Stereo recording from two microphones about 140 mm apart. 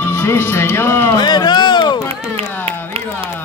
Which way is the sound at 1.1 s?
30° left (ahead or behind).